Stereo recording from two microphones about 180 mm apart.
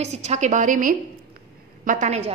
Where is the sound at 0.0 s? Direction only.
40° right (ahead or behind).